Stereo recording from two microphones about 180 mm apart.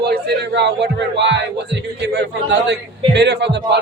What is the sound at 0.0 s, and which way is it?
Speech, 65° right (ahead or behind).